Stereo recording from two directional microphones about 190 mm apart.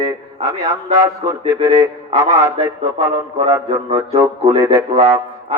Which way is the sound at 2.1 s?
15° right (ahead or behind).